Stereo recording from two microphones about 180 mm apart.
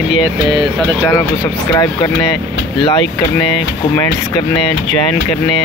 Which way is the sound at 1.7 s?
20° left (ahead or behind).